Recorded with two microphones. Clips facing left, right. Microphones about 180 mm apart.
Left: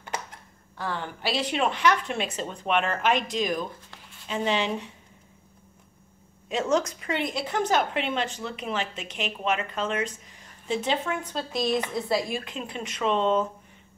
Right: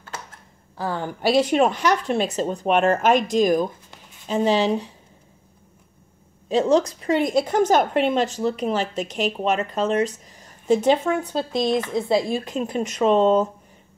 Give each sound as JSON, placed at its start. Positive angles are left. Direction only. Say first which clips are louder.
{"t": 0.7, "sound": "a woman's voice", "louder": "right 6 dB", "side_deg": -40}
{"t": 6.5, "sound": "a woman's voice", "louder": "right 7 dB", "side_deg": -35}
{"t": 12.5, "sound": "a woman's voice", "louder": "right 10 dB", "side_deg": -45}